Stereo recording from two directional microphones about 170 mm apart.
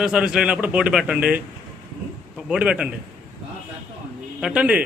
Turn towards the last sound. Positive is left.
turn(degrees=-5)  # may be behind; listen again after turning